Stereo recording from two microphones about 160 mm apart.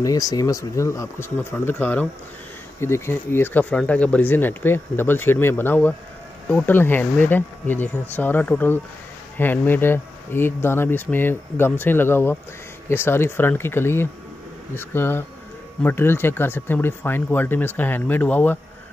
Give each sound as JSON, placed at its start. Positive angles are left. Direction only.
{"t": 0.0, "sound": "speech", "side_deg": 20}